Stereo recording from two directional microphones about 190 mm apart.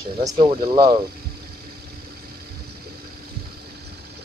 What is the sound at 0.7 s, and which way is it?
Speech, 20° right (ahead or behind).